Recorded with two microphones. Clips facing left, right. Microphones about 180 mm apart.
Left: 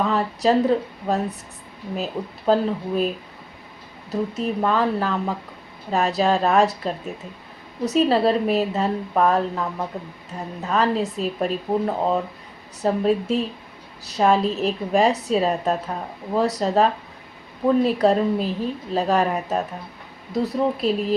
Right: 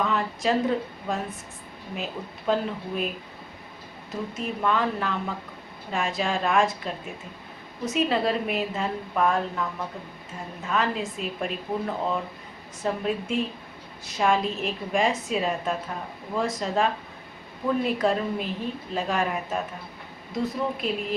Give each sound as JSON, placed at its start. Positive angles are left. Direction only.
{"t": 0.0, "sound": "a woman's voice", "side_deg": 35}
{"t": 2.5, "sound": "a woman's voice", "side_deg": 35}
{"t": 4.1, "sound": "a woman's voice", "side_deg": 35}
{"t": 7.9, "sound": "a woman's voice", "side_deg": 35}